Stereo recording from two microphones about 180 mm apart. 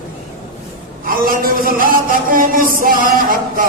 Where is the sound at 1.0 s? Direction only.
55° right (ahead or behind).